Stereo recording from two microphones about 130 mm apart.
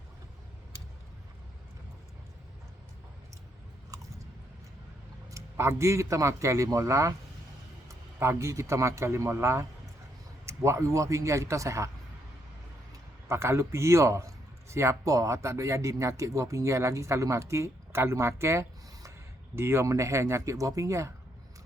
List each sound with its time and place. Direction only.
5.3 s a man's voice: 20° right (ahead or behind)
13.2 s a man's voice: 20° right (ahead or behind)